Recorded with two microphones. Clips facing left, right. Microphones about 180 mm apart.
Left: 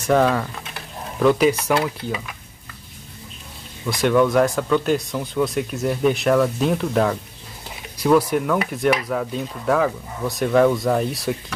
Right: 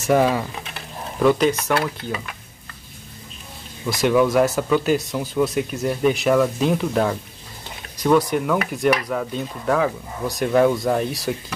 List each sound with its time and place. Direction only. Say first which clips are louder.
0.0 s speech: even; 10° right (ahead or behind)
1.5 s speech: left 1 dB; 15° left (ahead or behind)
3.8 s speech: even; 5° right (ahead or behind)